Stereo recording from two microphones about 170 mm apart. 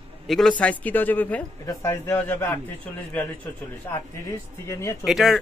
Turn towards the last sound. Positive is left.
turn(degrees=0)  # may be behind; listen again after turning